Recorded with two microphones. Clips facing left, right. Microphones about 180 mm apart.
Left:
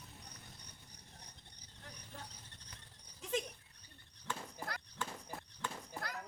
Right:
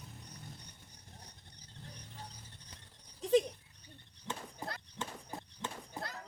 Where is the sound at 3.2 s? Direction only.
35° right (ahead or behind).